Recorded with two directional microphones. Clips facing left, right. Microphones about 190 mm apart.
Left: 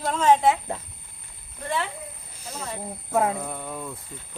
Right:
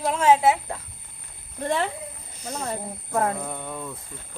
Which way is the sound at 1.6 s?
45° right (ahead or behind).